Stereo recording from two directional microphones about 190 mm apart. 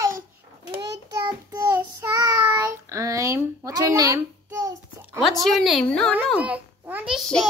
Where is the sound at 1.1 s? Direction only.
20° right (ahead or behind).